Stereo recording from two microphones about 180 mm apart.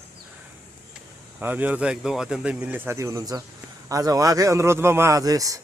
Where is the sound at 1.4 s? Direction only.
10° right (ahead or behind).